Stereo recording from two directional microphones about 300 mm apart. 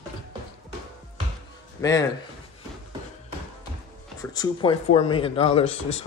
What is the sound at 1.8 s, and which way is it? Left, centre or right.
Speech, centre.